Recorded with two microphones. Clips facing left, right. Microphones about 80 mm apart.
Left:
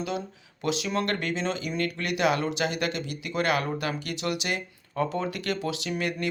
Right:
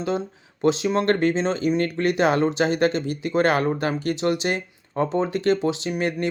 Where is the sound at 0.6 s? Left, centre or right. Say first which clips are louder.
Right 7 dB; right.